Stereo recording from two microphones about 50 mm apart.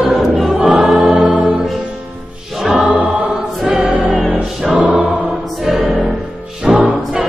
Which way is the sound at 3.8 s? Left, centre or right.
Right.